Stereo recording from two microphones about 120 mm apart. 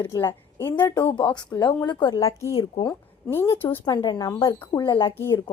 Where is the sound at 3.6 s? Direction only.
45° left (ahead or behind).